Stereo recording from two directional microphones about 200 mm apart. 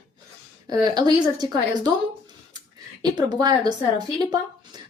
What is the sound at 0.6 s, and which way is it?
Speech, 20° right (ahead or behind).